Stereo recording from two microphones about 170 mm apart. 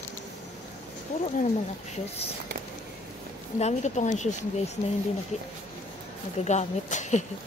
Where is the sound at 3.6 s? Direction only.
40° left (ahead or behind).